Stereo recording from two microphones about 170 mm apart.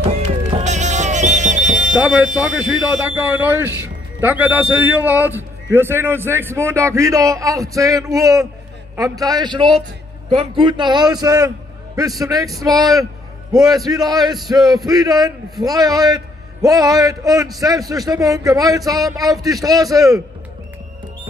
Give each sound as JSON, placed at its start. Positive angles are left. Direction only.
{"t": 0.0, "sound": "music", "side_deg": -35}
{"t": 2.0, "sound": "a man's voice", "side_deg": -5}